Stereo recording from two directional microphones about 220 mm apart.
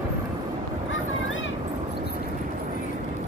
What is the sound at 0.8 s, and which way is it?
Vehicle, 60° left (ahead or behind).